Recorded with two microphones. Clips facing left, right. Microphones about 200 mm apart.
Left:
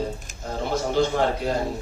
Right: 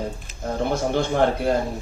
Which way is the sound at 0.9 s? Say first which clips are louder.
Left 1 dB; 55° right (ahead or behind).